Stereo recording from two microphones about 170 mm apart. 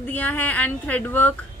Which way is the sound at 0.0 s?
10° left (ahead or behind).